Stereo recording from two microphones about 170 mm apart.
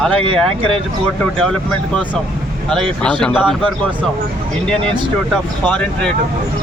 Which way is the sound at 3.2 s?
Centre (ahead or behind).